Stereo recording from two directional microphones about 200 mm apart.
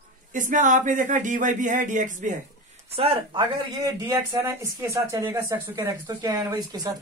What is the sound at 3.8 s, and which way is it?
Speech, 15° right (ahead or behind).